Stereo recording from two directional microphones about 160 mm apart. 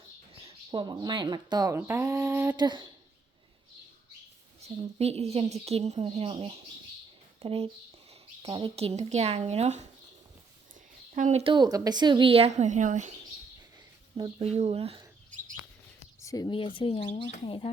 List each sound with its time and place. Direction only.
0.4 s speech: 30° right (ahead or behind)
1.9 s mantra: 20° right (ahead or behind)
2.6 s speech: 25° right (ahead or behind)
4.6 s a sound: 40° right (ahead or behind)
4.9 s speech: 40° right (ahead or behind)
11.1 s speech: 45° right (ahead or behind)
11.5 s speech: 25° right (ahead or behind); by 13.1 s 50° right (ahead or behind)
14.2 s speech: 35° right (ahead or behind)
16.2 s speech: 20° left (ahead or behind)